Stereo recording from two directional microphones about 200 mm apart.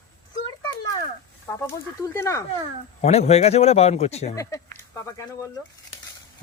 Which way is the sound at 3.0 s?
30° left (ahead or behind).